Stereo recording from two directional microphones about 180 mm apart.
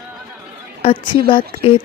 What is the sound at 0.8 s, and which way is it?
Speech, 30° left (ahead or behind).